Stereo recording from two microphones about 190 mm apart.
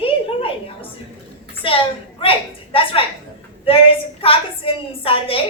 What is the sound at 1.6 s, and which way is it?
A woman's voice, 30° left (ahead or behind).